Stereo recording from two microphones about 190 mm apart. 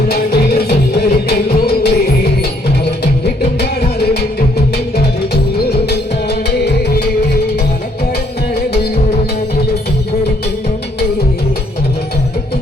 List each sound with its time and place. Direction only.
0.1 s music: 55° left (ahead or behind)
5.8 s music: 60° left (ahead or behind)
8.5 s music: 55° left (ahead or behind)